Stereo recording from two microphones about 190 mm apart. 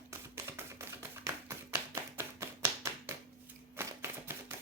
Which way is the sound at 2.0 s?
15° right (ahead or behind).